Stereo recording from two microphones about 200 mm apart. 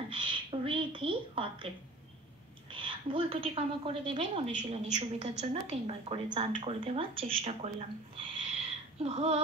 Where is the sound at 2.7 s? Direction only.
25° right (ahead or behind).